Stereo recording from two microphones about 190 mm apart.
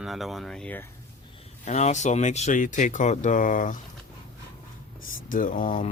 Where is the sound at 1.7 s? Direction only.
35° left (ahead or behind).